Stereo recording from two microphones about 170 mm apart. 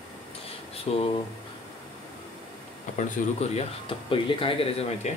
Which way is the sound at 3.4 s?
35° left (ahead or behind).